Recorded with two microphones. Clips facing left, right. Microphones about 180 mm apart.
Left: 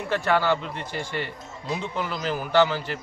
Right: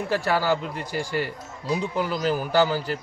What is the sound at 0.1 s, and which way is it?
Speech, 35° right (ahead or behind).